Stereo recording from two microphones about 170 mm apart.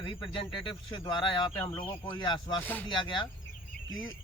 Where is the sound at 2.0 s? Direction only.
25° left (ahead or behind).